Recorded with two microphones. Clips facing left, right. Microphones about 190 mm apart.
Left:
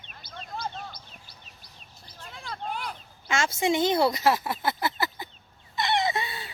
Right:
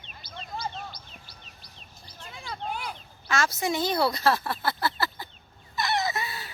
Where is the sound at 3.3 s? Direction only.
25° left (ahead or behind).